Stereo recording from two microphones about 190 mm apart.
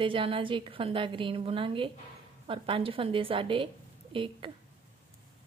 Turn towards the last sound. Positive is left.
turn(degrees=-25)  # may be behind; listen again after turning